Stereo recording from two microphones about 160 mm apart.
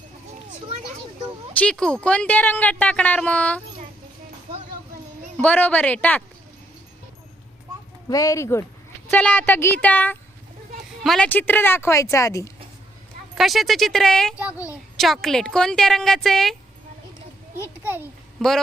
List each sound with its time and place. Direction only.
1.5 s speech: 5° left (ahead or behind)
5.4 s speech: 10° left (ahead or behind)
8.1 s speech: 20° left (ahead or behind); by 11.3 s centre (ahead or behind)
11.3 s speech: 10° left (ahead or behind)
13.3 s speech: centre (ahead or behind)
17.7 s a child's voice: 10° right (ahead or behind)